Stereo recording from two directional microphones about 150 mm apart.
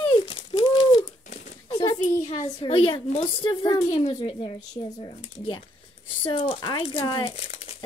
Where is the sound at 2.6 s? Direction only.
35° left (ahead or behind).